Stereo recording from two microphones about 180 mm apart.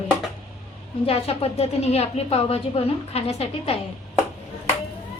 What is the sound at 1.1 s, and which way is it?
Speech, 35° left (ahead or behind).